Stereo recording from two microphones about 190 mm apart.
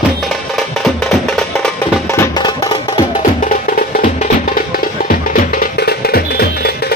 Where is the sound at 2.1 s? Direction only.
20° left (ahead or behind).